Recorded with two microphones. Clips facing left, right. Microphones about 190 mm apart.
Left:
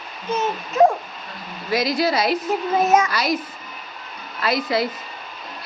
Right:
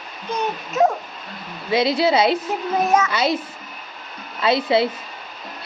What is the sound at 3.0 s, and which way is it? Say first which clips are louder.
Speech: right 2 dB; 25° right (ahead or behind).